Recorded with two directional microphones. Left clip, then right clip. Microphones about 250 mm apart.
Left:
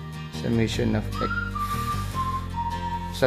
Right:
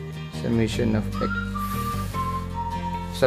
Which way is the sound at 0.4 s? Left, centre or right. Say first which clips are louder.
Right 1 dB; centre.